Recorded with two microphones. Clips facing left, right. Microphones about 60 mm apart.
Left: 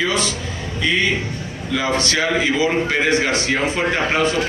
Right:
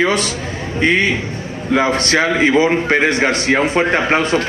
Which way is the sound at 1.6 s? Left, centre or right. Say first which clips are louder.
Right 5 dB; right.